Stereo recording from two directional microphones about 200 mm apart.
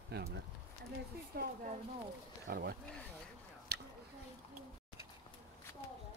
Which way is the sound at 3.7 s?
55° right (ahead or behind).